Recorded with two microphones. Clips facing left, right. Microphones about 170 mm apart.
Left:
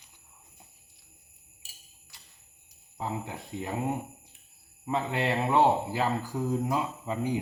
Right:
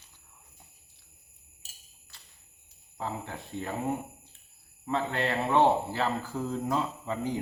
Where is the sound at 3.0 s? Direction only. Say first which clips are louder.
Left 1 dB; 15° left (ahead or behind).